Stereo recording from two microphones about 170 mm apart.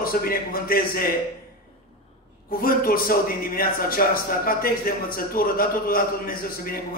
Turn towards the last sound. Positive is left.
turn(degrees=60)  # may be behind; listen again after turning